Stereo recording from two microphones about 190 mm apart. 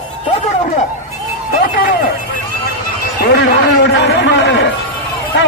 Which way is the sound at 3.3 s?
65° left (ahead or behind).